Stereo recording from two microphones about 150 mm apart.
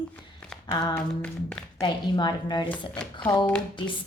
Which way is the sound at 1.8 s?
30° left (ahead or behind).